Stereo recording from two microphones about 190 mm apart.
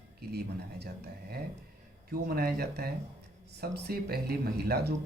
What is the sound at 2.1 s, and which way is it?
Speech, 55° right (ahead or behind).